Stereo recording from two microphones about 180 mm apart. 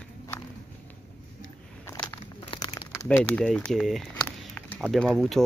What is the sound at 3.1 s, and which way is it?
Speech, 5° left (ahead or behind).